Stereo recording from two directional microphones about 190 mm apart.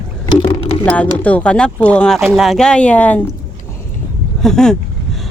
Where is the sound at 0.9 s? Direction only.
5° left (ahead or behind).